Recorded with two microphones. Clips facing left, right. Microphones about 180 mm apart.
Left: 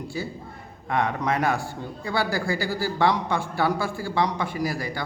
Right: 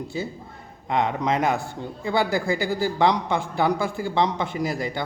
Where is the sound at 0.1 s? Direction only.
20° right (ahead or behind).